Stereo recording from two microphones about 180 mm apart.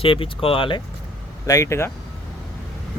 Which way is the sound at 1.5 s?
15° left (ahead or behind).